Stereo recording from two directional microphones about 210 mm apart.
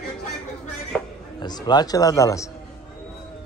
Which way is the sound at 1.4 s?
20° left (ahead or behind).